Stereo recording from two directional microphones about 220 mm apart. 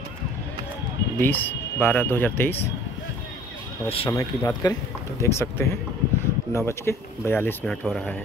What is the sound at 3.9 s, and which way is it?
Speech, 25° left (ahead or behind).